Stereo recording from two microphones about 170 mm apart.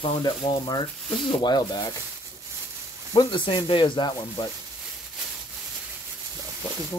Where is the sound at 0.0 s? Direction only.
25° left (ahead or behind).